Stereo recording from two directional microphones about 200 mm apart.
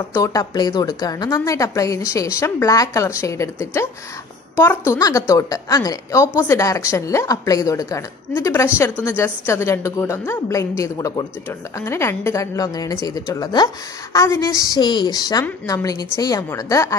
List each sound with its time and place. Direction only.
0.1 s a woman's voice: 15° left (ahead or behind)